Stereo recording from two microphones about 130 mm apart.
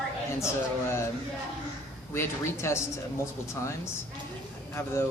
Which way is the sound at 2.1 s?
20° left (ahead or behind).